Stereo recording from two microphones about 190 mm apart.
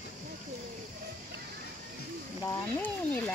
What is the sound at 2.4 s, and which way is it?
Speech, 10° left (ahead or behind).